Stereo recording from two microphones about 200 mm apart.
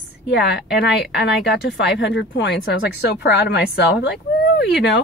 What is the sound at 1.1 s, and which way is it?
Speech, 55° left (ahead or behind).